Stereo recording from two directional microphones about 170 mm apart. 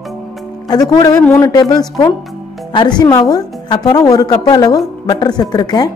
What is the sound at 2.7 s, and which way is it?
A woman's voice, 25° left (ahead or behind).